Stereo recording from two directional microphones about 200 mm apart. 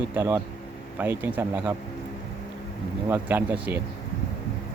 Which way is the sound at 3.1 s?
10° right (ahead or behind).